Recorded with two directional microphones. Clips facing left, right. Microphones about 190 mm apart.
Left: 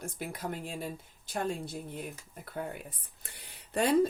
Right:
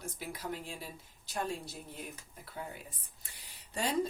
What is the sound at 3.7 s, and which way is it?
Speech, 60° left (ahead or behind).